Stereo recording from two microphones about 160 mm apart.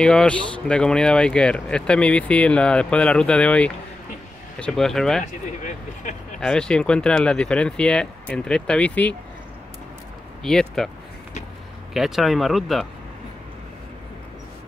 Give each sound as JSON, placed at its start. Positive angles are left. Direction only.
{"t": 0.0, "sound": "speech", "side_deg": 5}
{"t": 5.2, "sound": "speech", "side_deg": 50}
{"t": 6.4, "sound": "speech", "side_deg": 5}
{"t": 10.4, "sound": "speech", "side_deg": 5}
{"t": 11.9, "sound": "speech", "side_deg": 0}